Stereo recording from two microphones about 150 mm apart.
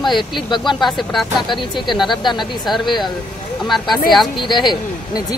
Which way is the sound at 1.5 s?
30° left (ahead or behind).